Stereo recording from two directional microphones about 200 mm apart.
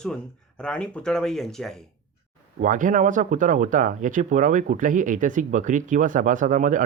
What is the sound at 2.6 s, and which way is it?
Speech, 40° right (ahead or behind).